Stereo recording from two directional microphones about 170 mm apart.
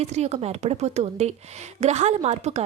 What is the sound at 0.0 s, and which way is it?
Speech, 40° right (ahead or behind).